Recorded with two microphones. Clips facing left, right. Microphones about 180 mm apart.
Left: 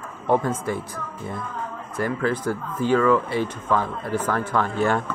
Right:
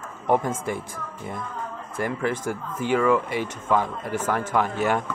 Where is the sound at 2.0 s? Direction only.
20° right (ahead or behind).